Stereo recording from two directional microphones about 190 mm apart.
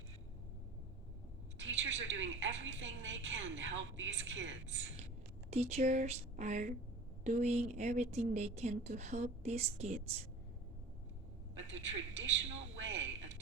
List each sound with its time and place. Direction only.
1.5 s a woman's voice: 70° right (ahead or behind)
5.5 s a woman's voice: 35° right (ahead or behind)
11.7 s a woman's voice: 80° right
12.7 s a sound: 75° right (ahead or behind)